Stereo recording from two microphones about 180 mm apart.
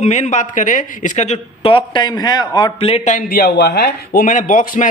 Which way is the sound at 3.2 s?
55° left (ahead or behind).